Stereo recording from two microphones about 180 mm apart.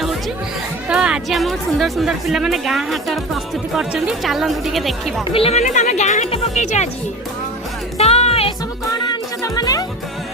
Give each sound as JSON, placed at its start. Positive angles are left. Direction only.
{"t": 0.9, "sound": "a woman's voice", "side_deg": -5}
{"t": 5.2, "sound": "speech", "side_deg": 30}
{"t": 7.9, "sound": "music", "side_deg": 35}
{"t": 9.4, "sound": "music", "side_deg": 20}